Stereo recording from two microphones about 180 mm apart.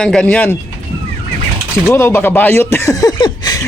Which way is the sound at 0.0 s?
5° left (ahead or behind).